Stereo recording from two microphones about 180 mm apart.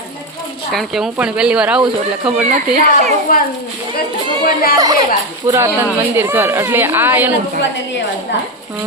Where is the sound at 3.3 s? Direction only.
50° left (ahead or behind).